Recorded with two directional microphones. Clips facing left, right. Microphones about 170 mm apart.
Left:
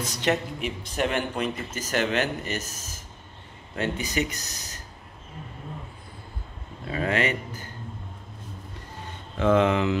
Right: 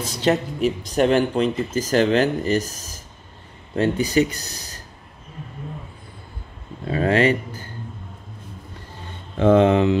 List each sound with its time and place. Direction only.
0.0 s speech: 30° right (ahead or behind)
6.9 s speech: 35° right (ahead or behind)
9.4 s speech: 30° right (ahead or behind)